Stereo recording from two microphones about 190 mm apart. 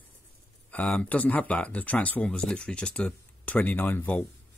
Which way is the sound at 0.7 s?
5° left (ahead or behind).